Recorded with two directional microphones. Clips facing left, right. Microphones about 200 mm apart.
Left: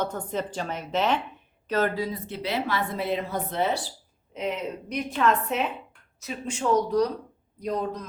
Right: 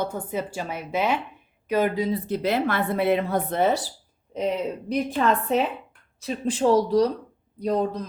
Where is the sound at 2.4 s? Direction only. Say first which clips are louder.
Right 4 dB; 55° right (ahead or behind).